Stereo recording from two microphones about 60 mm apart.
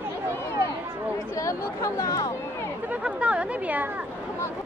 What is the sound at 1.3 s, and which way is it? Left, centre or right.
Chatter, left.